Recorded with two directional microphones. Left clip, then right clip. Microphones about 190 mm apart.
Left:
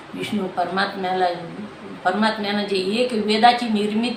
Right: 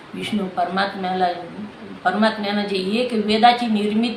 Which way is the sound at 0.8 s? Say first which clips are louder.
Left 1 dB; 15° right (ahead or behind).